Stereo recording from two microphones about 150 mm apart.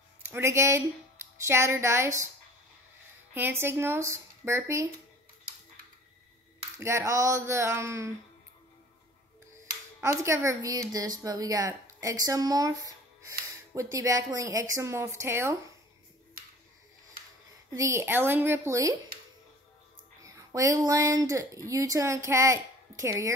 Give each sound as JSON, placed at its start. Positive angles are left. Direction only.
{"t": 0.2, "sound": "speech", "side_deg": -15}
{"t": 3.3, "sound": "speech", "side_deg": -15}
{"t": 6.8, "sound": "speech", "side_deg": -20}
{"t": 9.9, "sound": "speech", "side_deg": -20}
{"t": 17.6, "sound": "speech", "side_deg": -20}
{"t": 20.2, "sound": "speech", "side_deg": -20}